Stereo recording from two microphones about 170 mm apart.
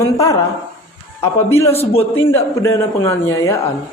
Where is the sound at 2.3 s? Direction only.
15° left (ahead or behind).